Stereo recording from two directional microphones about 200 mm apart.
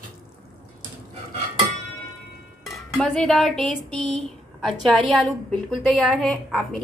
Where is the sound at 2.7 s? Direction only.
Centre (ahead or behind).